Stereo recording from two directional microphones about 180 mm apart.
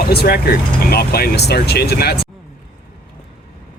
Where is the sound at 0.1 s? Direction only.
60° left (ahead or behind).